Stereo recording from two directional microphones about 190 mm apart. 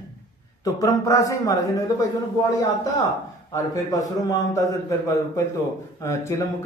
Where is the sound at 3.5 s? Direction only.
20° left (ahead or behind).